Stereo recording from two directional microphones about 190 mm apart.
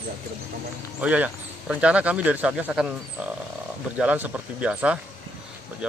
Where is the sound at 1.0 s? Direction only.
5° right (ahead or behind).